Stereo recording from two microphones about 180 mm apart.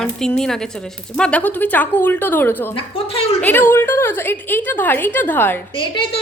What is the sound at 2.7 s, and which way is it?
Speech, 30° left (ahead or behind).